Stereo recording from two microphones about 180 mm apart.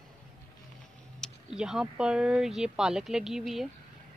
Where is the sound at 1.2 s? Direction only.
5° right (ahead or behind).